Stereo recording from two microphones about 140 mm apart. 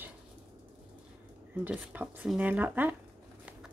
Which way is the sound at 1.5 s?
10° right (ahead or behind).